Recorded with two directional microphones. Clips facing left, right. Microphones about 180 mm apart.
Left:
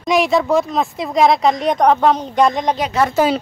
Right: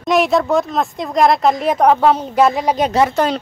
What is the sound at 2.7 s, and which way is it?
Speech, 30° right (ahead or behind).